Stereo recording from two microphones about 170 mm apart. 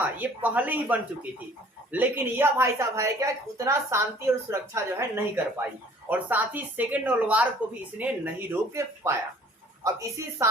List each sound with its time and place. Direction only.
0.0 s a woman's voice: 10° right (ahead or behind)